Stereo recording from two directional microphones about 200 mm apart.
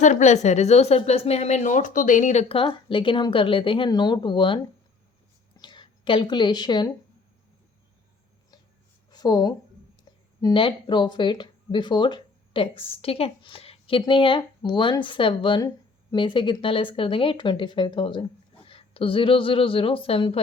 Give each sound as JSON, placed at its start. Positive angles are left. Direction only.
{"t": 0.0, "sound": "a woman's voice", "side_deg": 35}
{"t": 9.0, "sound": "a sound", "side_deg": 20}
{"t": 10.4, "sound": "speech", "side_deg": 25}